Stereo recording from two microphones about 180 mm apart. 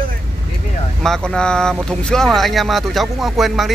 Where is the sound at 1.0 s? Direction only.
5° left (ahead or behind).